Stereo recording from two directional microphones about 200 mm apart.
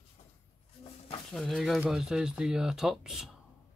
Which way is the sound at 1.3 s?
Centre (ahead or behind).